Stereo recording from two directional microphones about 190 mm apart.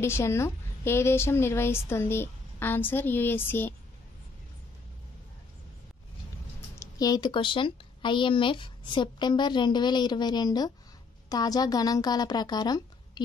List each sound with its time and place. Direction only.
0.0 s a woman's voice: 15° left (ahead or behind)
6.8 s a woman's voice: 20° left (ahead or behind)